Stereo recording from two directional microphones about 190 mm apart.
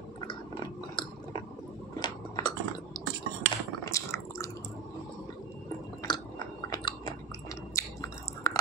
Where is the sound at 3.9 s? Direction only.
15° left (ahead or behind).